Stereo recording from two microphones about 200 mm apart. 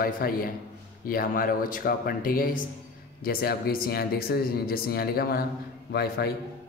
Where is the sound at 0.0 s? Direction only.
45° left (ahead or behind).